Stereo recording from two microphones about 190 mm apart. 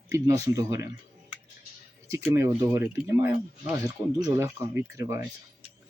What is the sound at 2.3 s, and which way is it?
Speech, 15° right (ahead or behind).